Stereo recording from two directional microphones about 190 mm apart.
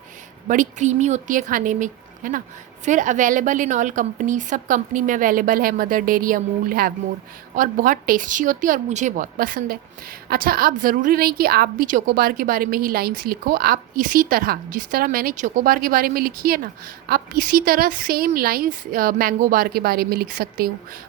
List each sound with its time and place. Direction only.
0.4 s a woman's voice: 40° right (ahead or behind)